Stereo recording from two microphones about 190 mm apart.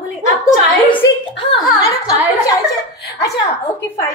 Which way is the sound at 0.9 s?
25° left (ahead or behind).